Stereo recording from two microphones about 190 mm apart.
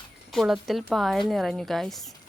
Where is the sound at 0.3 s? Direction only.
Centre (ahead or behind).